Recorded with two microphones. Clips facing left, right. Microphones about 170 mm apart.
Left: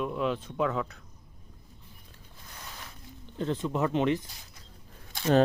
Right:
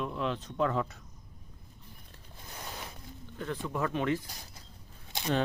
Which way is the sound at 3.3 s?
25° left (ahead or behind).